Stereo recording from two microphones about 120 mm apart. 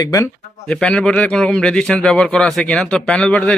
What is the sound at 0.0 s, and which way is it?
Speech, 30° left (ahead or behind).